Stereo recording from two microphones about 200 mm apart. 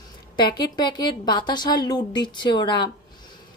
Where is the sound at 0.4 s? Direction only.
20° left (ahead or behind).